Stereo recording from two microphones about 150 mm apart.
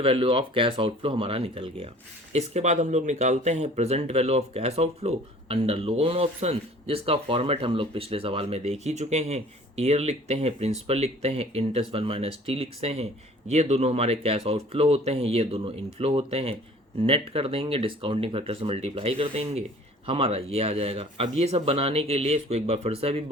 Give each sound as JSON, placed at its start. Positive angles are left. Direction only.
{"t": 0.0, "sound": "speech", "side_deg": -40}
{"t": 2.3, "sound": "speech", "side_deg": -50}